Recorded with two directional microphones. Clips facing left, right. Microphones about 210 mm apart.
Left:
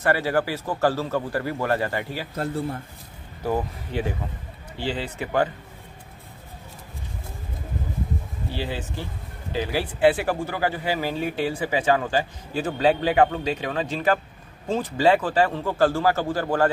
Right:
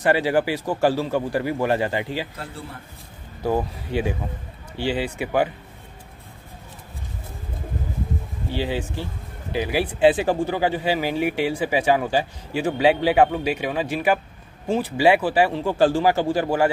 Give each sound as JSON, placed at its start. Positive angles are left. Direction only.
{"t": 0.0, "sound": "speech", "side_deg": -15}
{"t": 2.3, "sound": "speech", "side_deg": 45}
{"t": 3.4, "sound": "speech", "side_deg": -15}
{"t": 8.5, "sound": "speech", "side_deg": -15}